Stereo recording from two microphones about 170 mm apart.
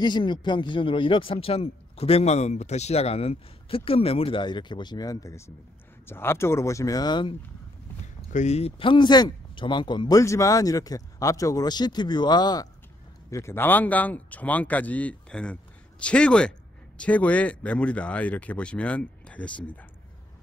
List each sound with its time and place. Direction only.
0.0 s a man's voice: 25° left (ahead or behind)
8.3 s a man's voice: 45° left (ahead or behind); by 19.9 s 10° left (ahead or behind)